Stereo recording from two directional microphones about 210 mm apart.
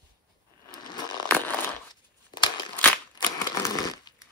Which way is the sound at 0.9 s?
20° left (ahead or behind).